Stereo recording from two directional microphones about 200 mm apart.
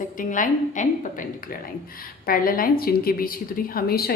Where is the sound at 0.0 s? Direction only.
40° left (ahead or behind).